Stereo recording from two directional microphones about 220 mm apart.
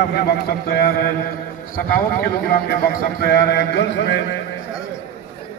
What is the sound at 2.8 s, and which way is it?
A man's voice, 45° left (ahead or behind).